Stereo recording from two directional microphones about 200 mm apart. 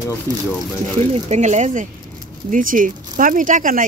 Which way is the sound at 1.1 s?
35° right (ahead or behind).